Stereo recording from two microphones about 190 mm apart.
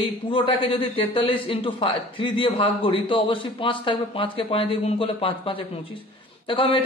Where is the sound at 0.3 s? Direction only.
25° left (ahead or behind).